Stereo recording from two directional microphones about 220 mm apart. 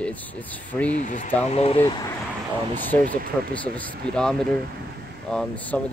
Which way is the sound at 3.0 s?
40° right (ahead or behind).